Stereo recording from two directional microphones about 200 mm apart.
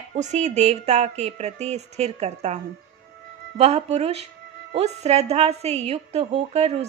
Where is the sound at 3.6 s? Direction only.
30° right (ahead or behind).